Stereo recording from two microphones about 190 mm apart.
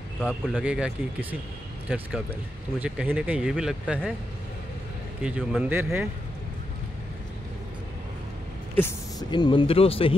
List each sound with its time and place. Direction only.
0.2 s speech: centre (ahead or behind)
2.8 s speech: 5° right (ahead or behind)
5.2 s speech: 5° right (ahead or behind)
8.7 s speech: 10° left (ahead or behind)
9.3 s speech: 25° left (ahead or behind)